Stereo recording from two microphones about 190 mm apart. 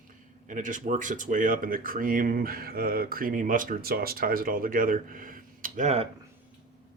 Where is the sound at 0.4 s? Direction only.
40° right (ahead or behind).